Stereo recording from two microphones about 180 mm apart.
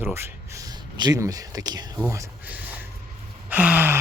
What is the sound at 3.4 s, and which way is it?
Sigh, 10° right (ahead or behind).